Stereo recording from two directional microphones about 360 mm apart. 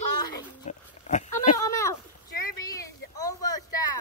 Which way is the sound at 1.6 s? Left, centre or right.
Centre.